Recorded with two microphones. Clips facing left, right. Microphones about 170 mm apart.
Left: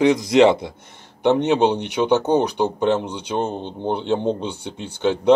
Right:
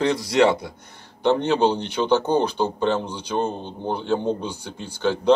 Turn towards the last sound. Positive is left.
turn(degrees=20)  # may be behind; listen again after turning